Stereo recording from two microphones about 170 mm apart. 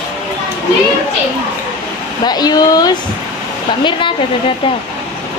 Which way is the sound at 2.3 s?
25° left (ahead or behind).